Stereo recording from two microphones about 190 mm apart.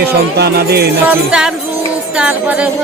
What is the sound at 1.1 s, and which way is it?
Music, 5° right (ahead or behind).